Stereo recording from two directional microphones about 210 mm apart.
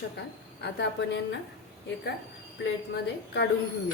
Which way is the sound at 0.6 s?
55° left (ahead or behind).